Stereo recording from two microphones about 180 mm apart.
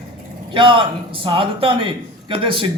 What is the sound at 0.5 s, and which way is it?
A man's voice, 30° right (ahead or behind).